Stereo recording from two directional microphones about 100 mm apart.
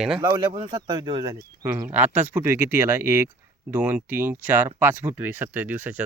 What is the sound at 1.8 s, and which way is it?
Speech, 15° right (ahead or behind).